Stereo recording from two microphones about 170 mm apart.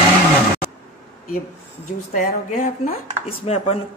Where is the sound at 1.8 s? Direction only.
45° left (ahead or behind).